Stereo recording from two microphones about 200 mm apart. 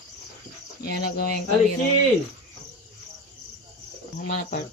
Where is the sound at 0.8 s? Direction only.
50° left (ahead or behind).